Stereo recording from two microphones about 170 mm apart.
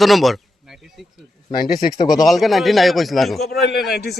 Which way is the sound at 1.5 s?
55° left (ahead or behind).